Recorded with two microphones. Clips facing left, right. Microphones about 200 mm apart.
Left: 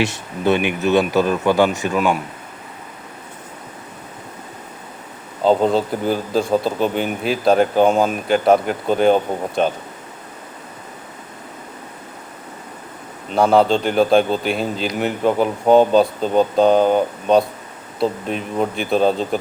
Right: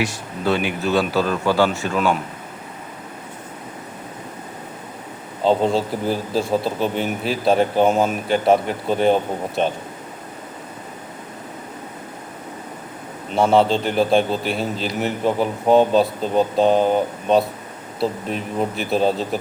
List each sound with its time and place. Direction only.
0.0 s speech: 20° left (ahead or behind)
5.5 s a man's voice: centre (ahead or behind)
13.3 s a man's voice: centre (ahead or behind)